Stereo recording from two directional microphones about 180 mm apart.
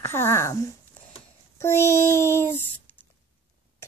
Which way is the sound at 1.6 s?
15° left (ahead or behind).